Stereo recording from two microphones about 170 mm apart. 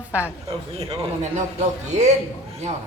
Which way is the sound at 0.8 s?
40° right (ahead or behind).